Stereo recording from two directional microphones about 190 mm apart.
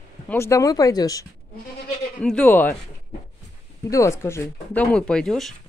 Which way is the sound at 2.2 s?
5° left (ahead or behind).